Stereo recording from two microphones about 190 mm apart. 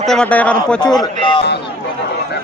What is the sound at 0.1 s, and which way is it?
Speech, 5° left (ahead or behind).